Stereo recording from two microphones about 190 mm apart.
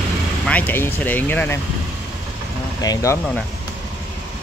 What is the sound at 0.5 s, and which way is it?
Speech, 10° left (ahead or behind).